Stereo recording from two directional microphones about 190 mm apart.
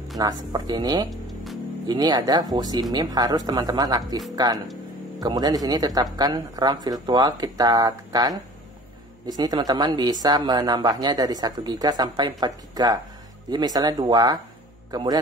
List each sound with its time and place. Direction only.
0.2 s speech: 20° right (ahead or behind)
1.1 s music: centre (ahead or behind)
1.9 s speech: 20° right (ahead or behind)
5.2 s a man's voice: 20° right (ahead or behind)